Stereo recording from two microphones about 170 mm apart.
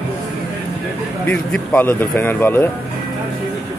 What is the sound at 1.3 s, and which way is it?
Speech, 10° left (ahead or behind).